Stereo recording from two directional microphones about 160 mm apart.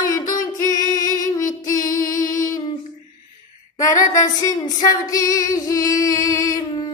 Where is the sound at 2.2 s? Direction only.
20° left (ahead or behind).